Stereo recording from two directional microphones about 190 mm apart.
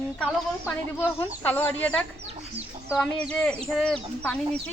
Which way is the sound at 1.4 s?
10° left (ahead or behind).